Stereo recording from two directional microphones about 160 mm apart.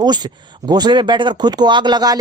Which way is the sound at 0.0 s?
25° right (ahead or behind).